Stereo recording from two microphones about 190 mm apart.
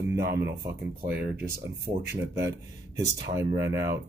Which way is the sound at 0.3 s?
15° right (ahead or behind).